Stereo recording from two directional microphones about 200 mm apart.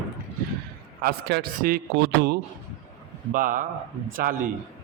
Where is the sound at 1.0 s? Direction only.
50° right (ahead or behind).